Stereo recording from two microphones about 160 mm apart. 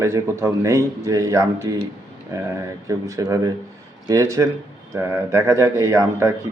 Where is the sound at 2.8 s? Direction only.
20° right (ahead or behind).